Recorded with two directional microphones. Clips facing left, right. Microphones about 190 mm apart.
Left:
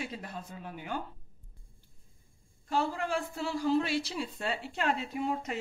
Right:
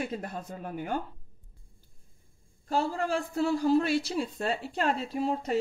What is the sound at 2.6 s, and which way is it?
A woman's voice, 40° right (ahead or behind).